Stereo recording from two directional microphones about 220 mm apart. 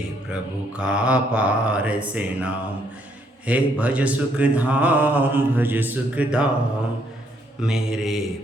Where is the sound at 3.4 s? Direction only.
5° right (ahead or behind).